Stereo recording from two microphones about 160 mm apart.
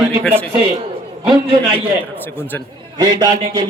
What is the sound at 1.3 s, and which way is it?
Speech, 35° right (ahead or behind).